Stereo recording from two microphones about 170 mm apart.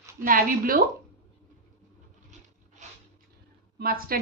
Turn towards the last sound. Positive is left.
turn(degrees=-60)  # may be behind; listen again after turning